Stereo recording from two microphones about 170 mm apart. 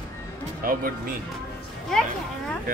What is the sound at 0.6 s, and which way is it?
Speech, 55° right (ahead or behind).